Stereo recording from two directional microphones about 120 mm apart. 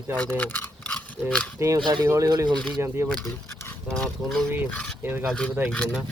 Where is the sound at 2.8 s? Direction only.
20° right (ahead or behind).